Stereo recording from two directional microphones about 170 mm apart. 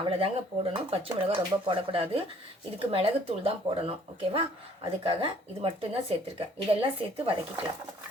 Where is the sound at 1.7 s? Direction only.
30° right (ahead or behind).